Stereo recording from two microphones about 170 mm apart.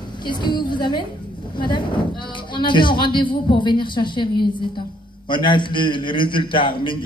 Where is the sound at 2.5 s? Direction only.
30° left (ahead or behind).